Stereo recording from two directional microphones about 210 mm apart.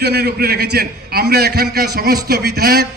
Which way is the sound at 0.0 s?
50° right (ahead or behind).